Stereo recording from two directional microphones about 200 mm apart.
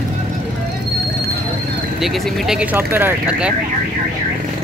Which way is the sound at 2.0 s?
Centre (ahead or behind).